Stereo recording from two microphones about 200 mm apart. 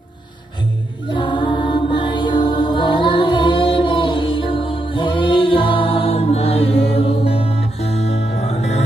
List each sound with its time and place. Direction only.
1.1 s mantra: 25° left (ahead or behind)
7.0 s music: 30° left (ahead or behind)